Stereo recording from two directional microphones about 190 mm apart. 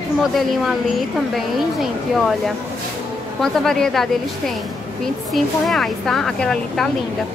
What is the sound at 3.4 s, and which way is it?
A woman's voice, centre (ahead or behind).